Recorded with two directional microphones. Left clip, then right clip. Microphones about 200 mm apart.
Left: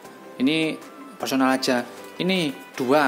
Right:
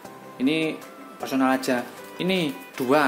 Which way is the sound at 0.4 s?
20° left (ahead or behind).